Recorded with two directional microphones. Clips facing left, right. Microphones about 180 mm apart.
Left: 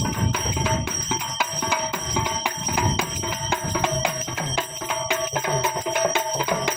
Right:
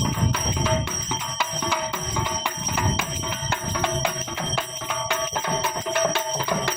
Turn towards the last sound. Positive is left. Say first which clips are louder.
# left 1 dB
turn(degrees=15)  # may be behind; listen again after turning